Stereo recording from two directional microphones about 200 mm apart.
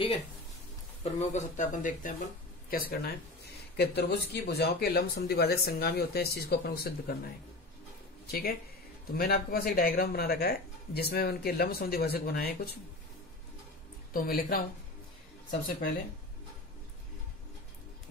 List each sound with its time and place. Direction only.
1.0 s speech: 40° left (ahead or behind)
8.3 s speech: 50° left (ahead or behind)
14.1 s speech: 45° left (ahead or behind)